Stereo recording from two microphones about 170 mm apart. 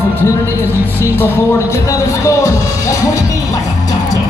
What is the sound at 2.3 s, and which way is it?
Music, 20° left (ahead or behind).